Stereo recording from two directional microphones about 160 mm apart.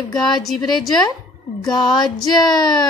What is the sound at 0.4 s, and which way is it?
Speech, centre (ahead or behind).